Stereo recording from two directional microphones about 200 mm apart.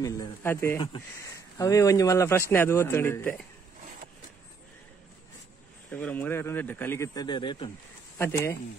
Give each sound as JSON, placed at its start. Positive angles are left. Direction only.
{"t": 0.0, "sound": "speech", "side_deg": 15}
{"t": 5.9, "sound": "speech", "side_deg": 10}